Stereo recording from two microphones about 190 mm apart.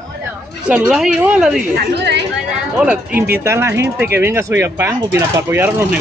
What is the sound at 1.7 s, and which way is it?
Speech, 60° right (ahead or behind).